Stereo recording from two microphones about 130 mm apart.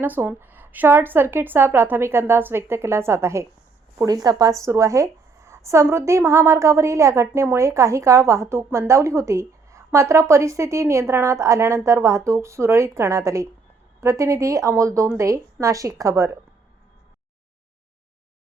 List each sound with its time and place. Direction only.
0.0 s a woman's voice: 15° right (ahead or behind)